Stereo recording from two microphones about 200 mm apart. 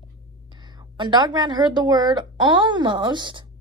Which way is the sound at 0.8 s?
20° right (ahead or behind).